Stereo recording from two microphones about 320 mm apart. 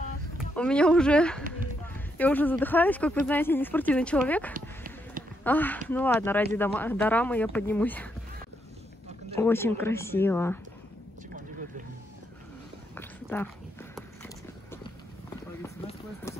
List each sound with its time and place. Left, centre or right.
0.6 s speech: centre
4.6 s a sound: right
5.4 s speech: centre
9.3 s speech: centre
12.9 s a sound: centre
15.6 s run: centre